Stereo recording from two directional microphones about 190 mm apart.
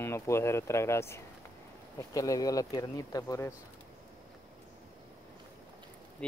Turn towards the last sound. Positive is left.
turn(degrees=5)  # may be behind; listen again after turning